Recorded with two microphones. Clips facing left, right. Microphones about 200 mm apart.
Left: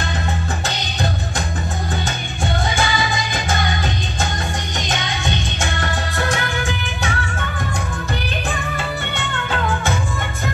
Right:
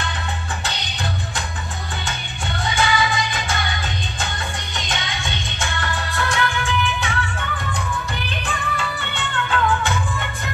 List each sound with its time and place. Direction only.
2.7 s music: 40° left (ahead or behind)
4.7 s music: 40° left (ahead or behind)
8.7 s music: 45° left (ahead or behind)